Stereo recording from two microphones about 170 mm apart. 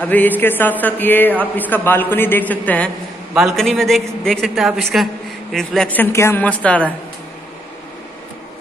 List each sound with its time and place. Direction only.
0.0 s a man's voice: 10° left (ahead or behind)